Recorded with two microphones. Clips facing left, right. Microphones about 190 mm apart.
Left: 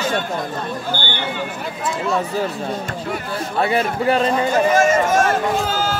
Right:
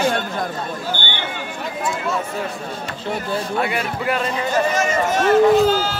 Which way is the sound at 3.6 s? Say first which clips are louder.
Left 4 dB; 30° left (ahead or behind).